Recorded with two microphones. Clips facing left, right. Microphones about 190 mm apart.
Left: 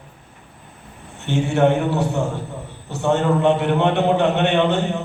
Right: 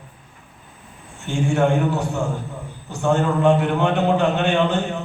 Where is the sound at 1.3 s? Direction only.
20° left (ahead or behind).